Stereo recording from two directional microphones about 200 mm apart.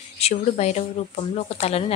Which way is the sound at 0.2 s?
35° left (ahead or behind).